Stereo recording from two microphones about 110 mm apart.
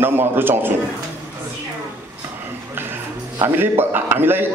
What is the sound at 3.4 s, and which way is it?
A man's voice, 20° right (ahead or behind).